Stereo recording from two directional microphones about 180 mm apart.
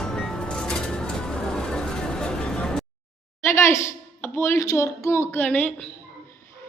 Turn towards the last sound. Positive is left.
turn(degrees=10)  # may be behind; listen again after turning